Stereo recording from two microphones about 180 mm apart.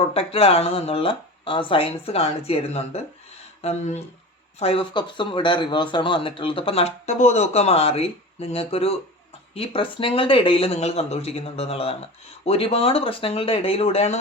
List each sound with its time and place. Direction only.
0.1 s speech: 30° left (ahead or behind)